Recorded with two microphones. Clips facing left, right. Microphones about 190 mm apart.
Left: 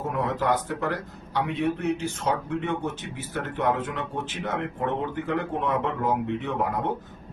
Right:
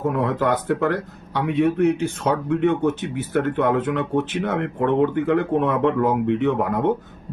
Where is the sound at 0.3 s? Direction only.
60° right (ahead or behind).